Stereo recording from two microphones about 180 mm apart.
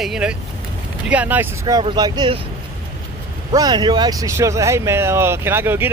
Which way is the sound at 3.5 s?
20° right (ahead or behind).